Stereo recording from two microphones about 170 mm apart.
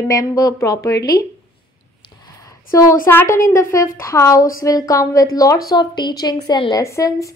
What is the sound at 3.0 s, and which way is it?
A woman's voice, 15° left (ahead or behind).